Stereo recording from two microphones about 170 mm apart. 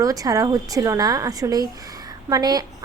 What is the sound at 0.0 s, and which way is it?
A woman's voice, 20° right (ahead or behind).